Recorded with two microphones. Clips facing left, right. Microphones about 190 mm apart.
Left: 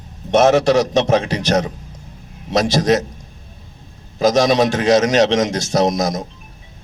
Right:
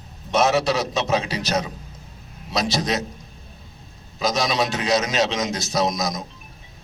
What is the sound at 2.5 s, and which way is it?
Speech, 45° left (ahead or behind).